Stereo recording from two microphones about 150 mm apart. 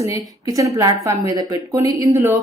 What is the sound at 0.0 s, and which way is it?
A woman's voice, 20° right (ahead or behind).